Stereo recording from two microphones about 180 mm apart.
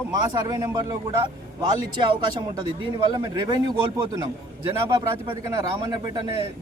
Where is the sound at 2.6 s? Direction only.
25° right (ahead or behind).